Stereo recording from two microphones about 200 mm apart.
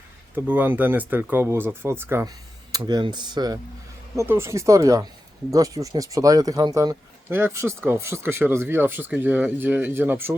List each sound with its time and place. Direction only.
0.3 s a man's voice: 10° right (ahead or behind)